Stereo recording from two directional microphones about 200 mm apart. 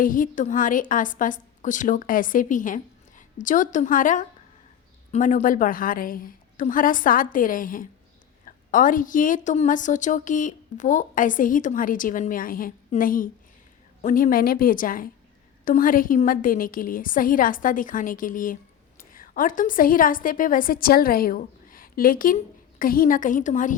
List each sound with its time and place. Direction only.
0.0 s a woman's voice: 40° left (ahead or behind)